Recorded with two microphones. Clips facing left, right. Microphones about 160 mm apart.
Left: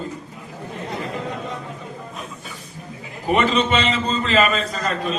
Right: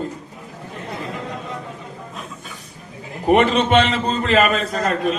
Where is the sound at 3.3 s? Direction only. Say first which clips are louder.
Right 3 dB; 60° right (ahead or behind).